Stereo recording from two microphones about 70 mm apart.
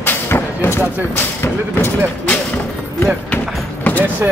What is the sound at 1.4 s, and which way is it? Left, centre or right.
Speech, left.